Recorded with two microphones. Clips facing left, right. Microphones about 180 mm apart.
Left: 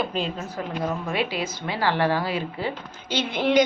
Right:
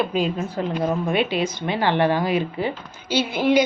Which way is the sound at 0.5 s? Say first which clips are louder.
Right 4 dB; 25° right (ahead or behind).